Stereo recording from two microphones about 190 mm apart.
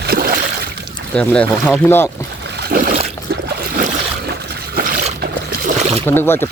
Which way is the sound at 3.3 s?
55° right (ahead or behind).